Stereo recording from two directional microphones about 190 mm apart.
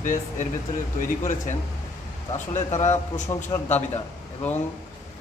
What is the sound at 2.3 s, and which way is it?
Speech, 40° left (ahead or behind).